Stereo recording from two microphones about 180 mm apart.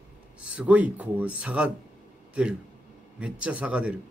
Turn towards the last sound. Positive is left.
turn(degrees=-5)  # may be behind; listen again after turning